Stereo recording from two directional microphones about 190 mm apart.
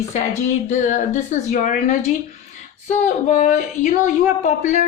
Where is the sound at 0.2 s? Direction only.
40° left (ahead or behind).